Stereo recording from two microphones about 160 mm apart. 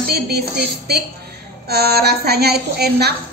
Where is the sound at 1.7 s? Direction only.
85° right.